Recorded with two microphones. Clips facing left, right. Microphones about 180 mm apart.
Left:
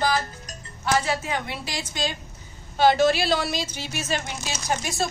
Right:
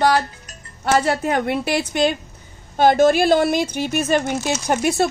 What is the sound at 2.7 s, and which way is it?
A woman's voice, 50° right (ahead or behind).